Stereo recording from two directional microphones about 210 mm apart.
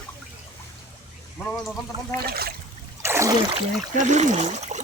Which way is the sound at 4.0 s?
35° right (ahead or behind).